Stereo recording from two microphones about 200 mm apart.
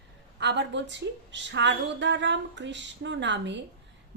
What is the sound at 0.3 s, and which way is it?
A woman's voice, 60° right (ahead or behind).